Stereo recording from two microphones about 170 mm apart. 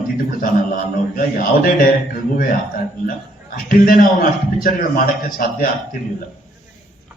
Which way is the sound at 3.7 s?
55° left (ahead or behind).